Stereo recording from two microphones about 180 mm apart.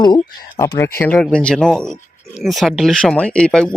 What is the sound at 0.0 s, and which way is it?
Speech, 25° left (ahead or behind).